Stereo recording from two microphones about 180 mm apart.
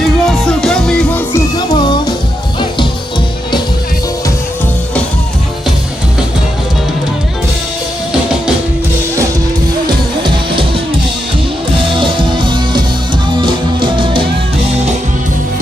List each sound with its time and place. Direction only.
0.0 s music: centre (ahead or behind)
1.5 s music: 25° left (ahead or behind)
9.8 s music: 25° right (ahead or behind)
11.9 s music: 25° right (ahead or behind)